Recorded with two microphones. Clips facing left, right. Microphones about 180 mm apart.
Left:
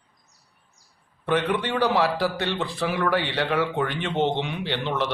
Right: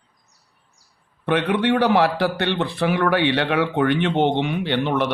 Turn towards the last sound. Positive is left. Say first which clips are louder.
# right 5 dB
turn(degrees=-55)  # may be behind; listen again after turning